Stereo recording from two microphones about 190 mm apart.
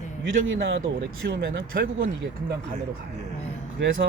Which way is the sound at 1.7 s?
55° right (ahead or behind).